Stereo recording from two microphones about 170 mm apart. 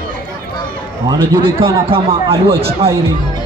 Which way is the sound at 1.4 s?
30° right (ahead or behind).